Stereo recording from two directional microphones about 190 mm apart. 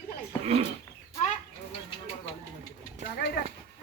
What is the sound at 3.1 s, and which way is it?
Speech, 55° left (ahead or behind).